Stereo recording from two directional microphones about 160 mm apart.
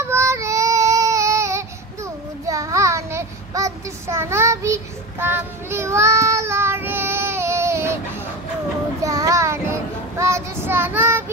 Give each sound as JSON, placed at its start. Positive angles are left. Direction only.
{"t": 0.1, "sound": "child singing", "side_deg": -20}
{"t": 9.0, "sound": "child singing", "side_deg": -20}